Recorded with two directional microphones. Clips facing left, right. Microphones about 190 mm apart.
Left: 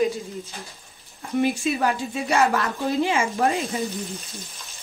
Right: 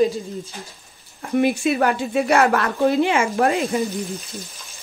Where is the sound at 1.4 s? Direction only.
60° right (ahead or behind).